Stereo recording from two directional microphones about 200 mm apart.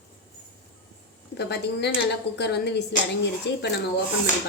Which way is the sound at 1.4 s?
55° left (ahead or behind).